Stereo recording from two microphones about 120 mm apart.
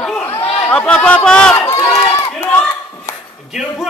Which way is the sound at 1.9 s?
30° left (ahead or behind).